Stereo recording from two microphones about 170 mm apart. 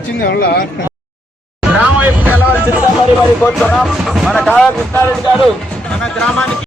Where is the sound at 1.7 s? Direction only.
10° right (ahead or behind).